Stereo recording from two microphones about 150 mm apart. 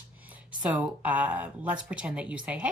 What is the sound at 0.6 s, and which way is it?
Speech, 10° right (ahead or behind).